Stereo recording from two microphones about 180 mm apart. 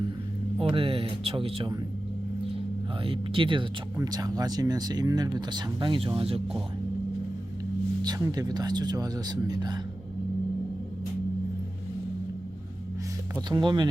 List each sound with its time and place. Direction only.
0.6 s speech: 30° right (ahead or behind)
3.0 s speech: 30° right (ahead or behind)
8.0 s speech: 20° right (ahead or behind)
13.5 s speech: 25° right (ahead or behind)